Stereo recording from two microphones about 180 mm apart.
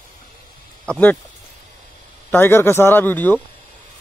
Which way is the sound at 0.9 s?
10° left (ahead or behind).